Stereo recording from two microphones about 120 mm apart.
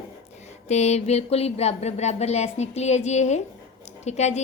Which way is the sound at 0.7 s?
65° left (ahead or behind).